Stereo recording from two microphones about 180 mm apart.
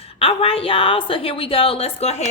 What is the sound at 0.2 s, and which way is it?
A woman's voice, 30° left (ahead or behind).